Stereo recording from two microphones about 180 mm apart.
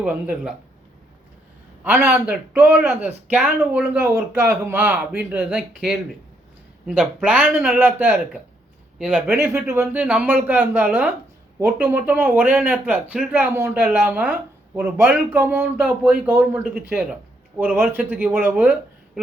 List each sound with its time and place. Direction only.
0.0 s speech: 5° right (ahead or behind)
1.8 s speech: 10° right (ahead or behind)